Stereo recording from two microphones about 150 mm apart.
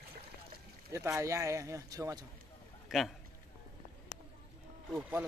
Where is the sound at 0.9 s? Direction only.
20° right (ahead or behind).